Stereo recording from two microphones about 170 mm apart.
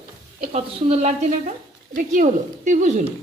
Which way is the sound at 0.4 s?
40° right (ahead or behind).